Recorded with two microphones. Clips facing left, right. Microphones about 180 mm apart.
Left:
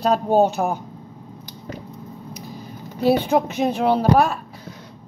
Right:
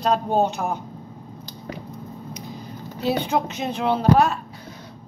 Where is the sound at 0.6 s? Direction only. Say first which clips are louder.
Left 4 dB; 35° left (ahead or behind).